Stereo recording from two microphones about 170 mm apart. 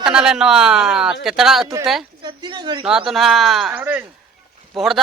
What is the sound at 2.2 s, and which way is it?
Speech, 25° right (ahead or behind).